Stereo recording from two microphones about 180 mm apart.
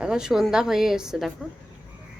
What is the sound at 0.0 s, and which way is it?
A woman's voice, 5° right (ahead or behind).